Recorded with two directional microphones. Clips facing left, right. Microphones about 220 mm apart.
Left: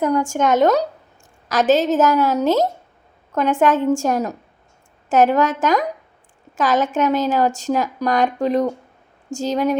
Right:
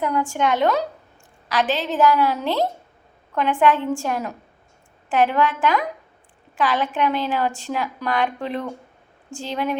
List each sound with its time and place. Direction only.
0.0 s a woman's voice: 45° left (ahead or behind)